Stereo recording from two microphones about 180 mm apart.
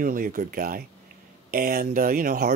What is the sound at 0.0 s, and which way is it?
Speech, 50° right (ahead or behind).